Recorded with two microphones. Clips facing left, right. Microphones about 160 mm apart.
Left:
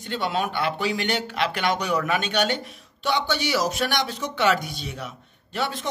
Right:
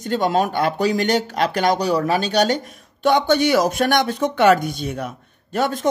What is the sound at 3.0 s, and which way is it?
Speech, 50° right (ahead or behind).